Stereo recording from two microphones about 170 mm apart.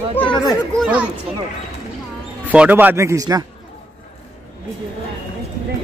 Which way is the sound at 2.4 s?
10° right (ahead or behind).